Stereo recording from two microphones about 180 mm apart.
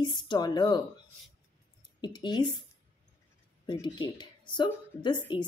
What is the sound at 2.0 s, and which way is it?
Speech, 25° left (ahead or behind).